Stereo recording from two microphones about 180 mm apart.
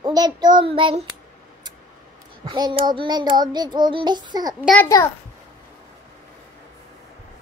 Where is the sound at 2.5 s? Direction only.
25° right (ahead or behind).